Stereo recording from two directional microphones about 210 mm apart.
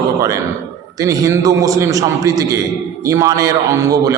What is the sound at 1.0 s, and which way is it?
A man's voice, 15° right (ahead or behind).